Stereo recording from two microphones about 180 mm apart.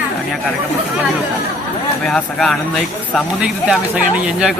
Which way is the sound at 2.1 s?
5° left (ahead or behind).